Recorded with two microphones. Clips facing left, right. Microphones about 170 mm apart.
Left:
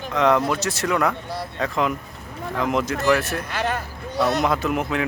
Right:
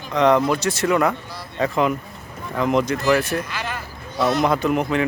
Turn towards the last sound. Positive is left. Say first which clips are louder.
# right 3 dB
turn(degrees=0)  # may be behind; listen again after turning